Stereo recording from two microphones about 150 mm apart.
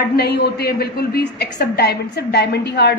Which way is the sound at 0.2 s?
90° left.